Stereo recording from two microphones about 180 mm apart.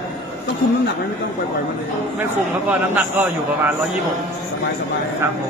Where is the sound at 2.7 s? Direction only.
10° right (ahead or behind).